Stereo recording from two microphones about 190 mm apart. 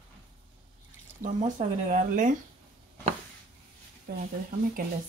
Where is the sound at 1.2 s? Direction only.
40° right (ahead or behind).